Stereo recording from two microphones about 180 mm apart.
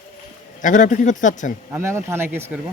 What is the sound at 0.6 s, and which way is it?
Speech, 45° left (ahead or behind).